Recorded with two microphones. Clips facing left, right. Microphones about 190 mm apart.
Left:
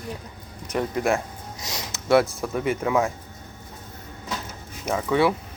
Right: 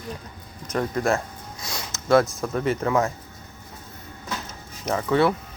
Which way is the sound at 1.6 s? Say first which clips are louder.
Even; 15° left (ahead or behind).